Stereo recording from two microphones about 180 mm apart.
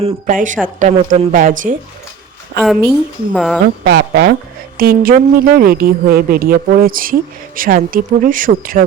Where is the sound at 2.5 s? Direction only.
60° right (ahead or behind).